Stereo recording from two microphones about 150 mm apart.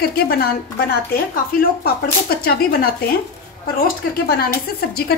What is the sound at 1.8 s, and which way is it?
Speech, 90° left.